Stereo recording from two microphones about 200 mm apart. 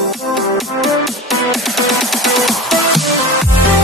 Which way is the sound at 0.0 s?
Centre (ahead or behind).